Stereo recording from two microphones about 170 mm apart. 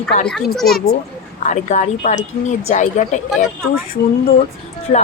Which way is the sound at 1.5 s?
45° left (ahead or behind).